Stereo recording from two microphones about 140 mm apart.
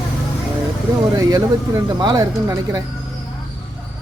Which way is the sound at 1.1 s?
25° right (ahead or behind).